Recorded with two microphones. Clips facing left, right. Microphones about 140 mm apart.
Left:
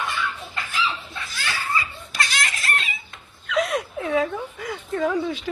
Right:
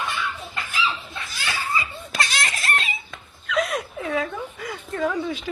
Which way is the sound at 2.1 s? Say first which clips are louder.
Right 1 dB; 30° right (ahead or behind).